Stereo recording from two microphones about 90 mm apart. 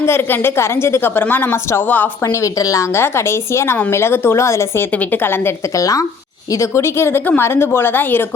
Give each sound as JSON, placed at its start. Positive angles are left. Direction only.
{"t": 0.0, "sound": "a woman's voice", "side_deg": 25}
{"t": 2.2, "sound": "a woman's voice", "side_deg": 40}
{"t": 4.9, "sound": "a woman's voice", "side_deg": 20}
{"t": 5.7, "sound": "a woman's voice", "side_deg": 40}